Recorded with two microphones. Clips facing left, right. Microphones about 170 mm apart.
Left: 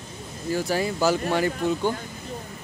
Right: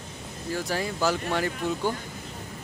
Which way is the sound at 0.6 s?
5° left (ahead or behind).